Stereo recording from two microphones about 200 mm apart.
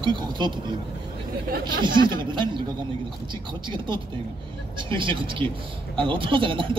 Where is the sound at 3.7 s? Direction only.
25° right (ahead or behind).